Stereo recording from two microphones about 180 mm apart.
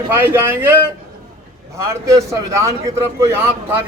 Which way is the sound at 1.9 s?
20° right (ahead or behind).